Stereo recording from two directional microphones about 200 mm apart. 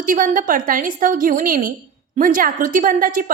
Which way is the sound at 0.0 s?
40° right (ahead or behind).